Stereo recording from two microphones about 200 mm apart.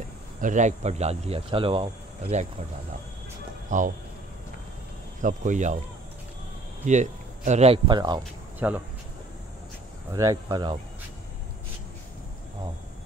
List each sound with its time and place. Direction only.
0.4 s speech: 40° right (ahead or behind)
3.7 s speech: 40° right (ahead or behind)
5.2 s speech: 40° right (ahead or behind)
6.9 s speech: 35° right (ahead or behind)
8.5 s speech: 10° right (ahead or behind)
10.1 s speech: 15° right (ahead or behind)